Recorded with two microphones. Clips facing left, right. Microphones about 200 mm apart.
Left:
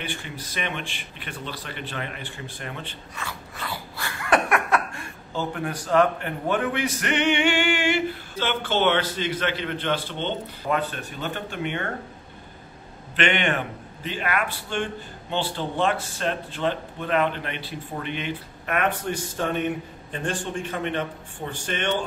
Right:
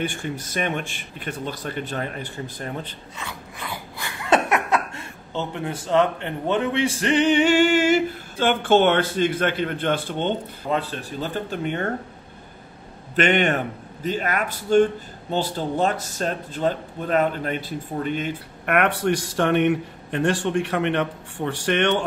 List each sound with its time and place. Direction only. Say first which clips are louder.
0.0 s speech: right 7 dB; 45° right (ahead or behind)
3.2 s a sound: even; 20° right (ahead or behind); by 10.3 s 50° right (ahead or behind)
10.7 s speech: right 1 dB; 30° right (ahead or behind)
13.1 s speech: right 4 dB; 45° right (ahead or behind)
18.7 s a man's voice: right 5 dB; 70° right (ahead or behind)